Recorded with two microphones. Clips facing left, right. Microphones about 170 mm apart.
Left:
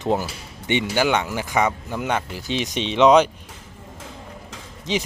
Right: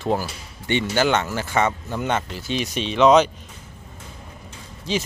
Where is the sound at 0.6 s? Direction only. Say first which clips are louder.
Even; 15° left (ahead or behind).